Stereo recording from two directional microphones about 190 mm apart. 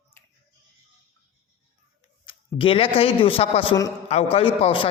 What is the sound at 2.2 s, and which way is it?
A man's voice, 25° left (ahead or behind).